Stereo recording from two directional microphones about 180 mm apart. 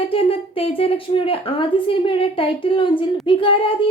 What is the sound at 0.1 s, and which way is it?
A woman's voice, 30° left (ahead or behind).